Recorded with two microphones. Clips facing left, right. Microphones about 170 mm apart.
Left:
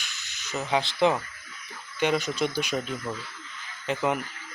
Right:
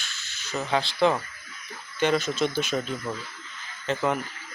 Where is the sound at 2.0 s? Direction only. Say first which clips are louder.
Right 2 dB; 15° left (ahead or behind).